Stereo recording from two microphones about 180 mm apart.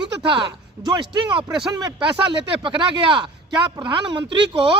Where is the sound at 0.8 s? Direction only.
15° right (ahead or behind).